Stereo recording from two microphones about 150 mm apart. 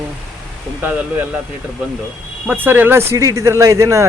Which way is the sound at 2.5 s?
15° right (ahead or behind).